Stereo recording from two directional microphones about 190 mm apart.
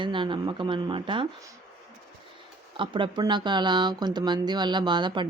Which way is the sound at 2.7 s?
25° right (ahead or behind).